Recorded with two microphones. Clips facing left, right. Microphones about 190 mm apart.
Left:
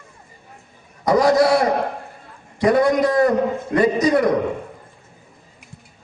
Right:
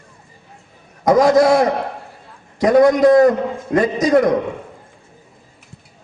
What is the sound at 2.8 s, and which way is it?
A man's voice, 45° right (ahead or behind).